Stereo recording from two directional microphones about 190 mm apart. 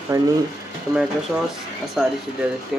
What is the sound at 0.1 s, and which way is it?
Speech, 15° right (ahead or behind).